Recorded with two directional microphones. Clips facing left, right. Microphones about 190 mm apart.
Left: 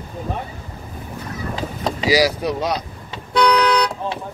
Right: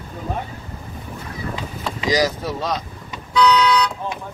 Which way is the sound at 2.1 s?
10° left (ahead or behind).